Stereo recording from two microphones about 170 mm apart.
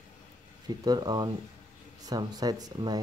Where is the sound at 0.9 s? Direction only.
25° right (ahead or behind).